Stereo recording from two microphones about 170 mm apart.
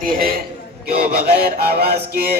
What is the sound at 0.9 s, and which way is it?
Music, 65° right (ahead or behind).